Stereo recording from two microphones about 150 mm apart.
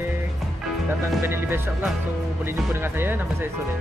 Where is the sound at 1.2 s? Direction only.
15° right (ahead or behind).